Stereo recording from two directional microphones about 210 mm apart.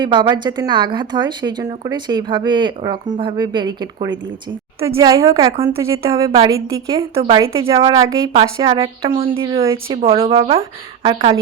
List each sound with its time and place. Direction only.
0.0 s a woman's voice: 20° right (ahead or behind)